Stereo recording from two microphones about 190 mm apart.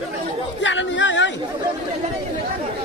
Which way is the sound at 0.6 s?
75° left (ahead or behind).